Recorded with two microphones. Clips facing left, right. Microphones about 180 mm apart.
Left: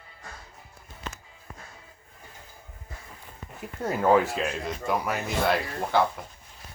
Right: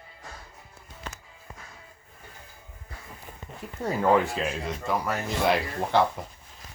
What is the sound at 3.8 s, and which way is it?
Speech, 5° left (ahead or behind).